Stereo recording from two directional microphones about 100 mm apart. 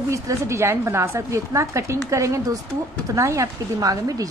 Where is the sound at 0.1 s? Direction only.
30° right (ahead or behind).